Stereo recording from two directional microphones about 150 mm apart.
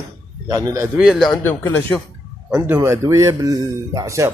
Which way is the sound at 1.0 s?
Centre (ahead or behind).